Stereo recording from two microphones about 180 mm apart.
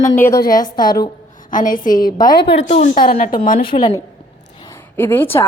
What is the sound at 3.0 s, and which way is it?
A woman's voice, 30° left (ahead or behind).